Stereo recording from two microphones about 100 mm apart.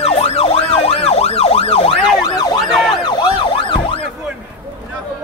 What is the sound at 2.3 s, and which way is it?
Emergency vehicle, 40° left (ahead or behind).